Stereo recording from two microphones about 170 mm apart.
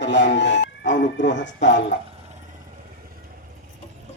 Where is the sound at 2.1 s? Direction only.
40° right (ahead or behind).